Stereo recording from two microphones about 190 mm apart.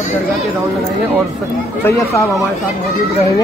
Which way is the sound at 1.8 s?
15° left (ahead or behind).